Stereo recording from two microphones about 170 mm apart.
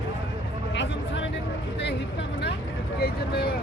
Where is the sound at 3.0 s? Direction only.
65° left (ahead or behind).